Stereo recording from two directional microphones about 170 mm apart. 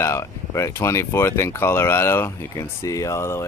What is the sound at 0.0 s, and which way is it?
Speech, 15° left (ahead or behind).